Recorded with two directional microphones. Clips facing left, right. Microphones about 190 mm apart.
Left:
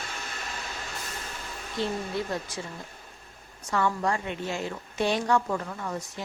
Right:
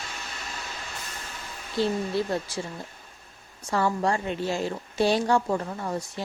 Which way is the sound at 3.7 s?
35° right (ahead or behind).